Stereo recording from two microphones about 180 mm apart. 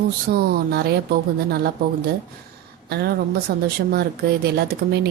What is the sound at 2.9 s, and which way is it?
Speech, 60° right (ahead or behind).